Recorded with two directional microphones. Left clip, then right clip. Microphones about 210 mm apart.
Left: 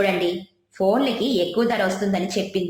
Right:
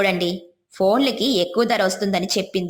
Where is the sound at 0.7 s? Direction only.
35° right (ahead or behind).